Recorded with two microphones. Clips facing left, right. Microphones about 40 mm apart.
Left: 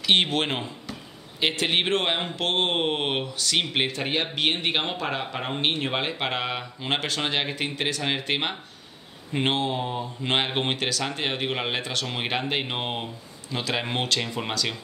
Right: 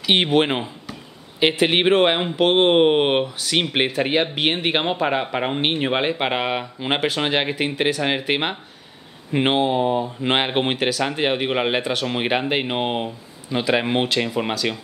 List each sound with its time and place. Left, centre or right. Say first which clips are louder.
0.0 s speech: right 5 dB; centre